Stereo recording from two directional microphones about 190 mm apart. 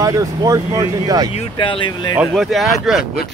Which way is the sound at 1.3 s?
25° left (ahead or behind).